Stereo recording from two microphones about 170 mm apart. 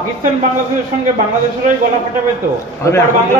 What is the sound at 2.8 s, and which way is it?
Speech, 20° left (ahead or behind).